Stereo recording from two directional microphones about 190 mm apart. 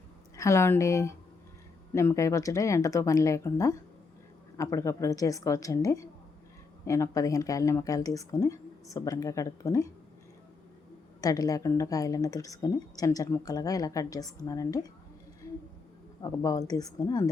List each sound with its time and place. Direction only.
0.3 s speech: 15° left (ahead or behind)
11.2 s a woman's voice: 20° left (ahead or behind)
16.2 s a woman's voice: 15° left (ahead or behind)